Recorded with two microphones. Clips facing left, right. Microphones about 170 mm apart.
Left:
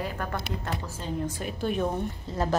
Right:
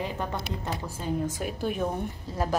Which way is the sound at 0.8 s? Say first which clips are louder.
Right 2 dB; 10° right (ahead or behind).